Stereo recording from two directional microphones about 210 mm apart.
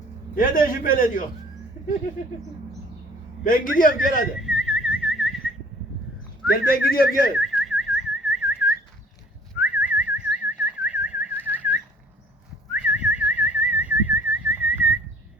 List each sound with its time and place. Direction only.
0.3 s a man's voice: 40° left (ahead or behind)
3.4 s a man's voice: 40° left (ahead or behind)
4.4 s whistling: 5° right (ahead or behind)
6.4 s a sound: centre (ahead or behind)
6.9 s speech: 45° left (ahead or behind)
7.3 s whistling: centre (ahead or behind)
12.7 s whistling: 5° right (ahead or behind)